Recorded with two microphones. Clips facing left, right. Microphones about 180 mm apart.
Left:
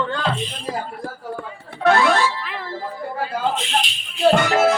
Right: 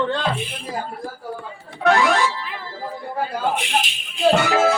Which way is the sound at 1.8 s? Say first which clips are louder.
Left 1 dB; 15° right (ahead or behind).